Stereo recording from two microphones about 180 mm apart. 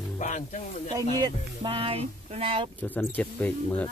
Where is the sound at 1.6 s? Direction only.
30° right (ahead or behind).